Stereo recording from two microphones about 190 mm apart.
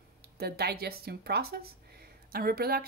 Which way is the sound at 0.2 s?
55° right (ahead or behind).